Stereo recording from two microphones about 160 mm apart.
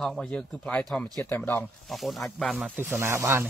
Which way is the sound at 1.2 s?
15° left (ahead or behind).